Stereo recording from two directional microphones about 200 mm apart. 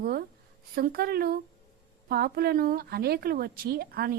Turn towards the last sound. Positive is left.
turn(degrees=-50)  # may be behind; listen again after turning